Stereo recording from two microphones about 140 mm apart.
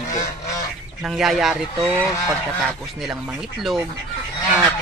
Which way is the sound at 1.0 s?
5° right (ahead or behind).